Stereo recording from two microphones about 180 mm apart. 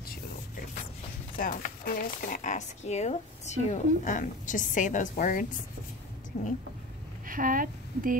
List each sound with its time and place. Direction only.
1.3 s speech: 50° left (ahead or behind)
7.2 s speech: 50° right (ahead or behind)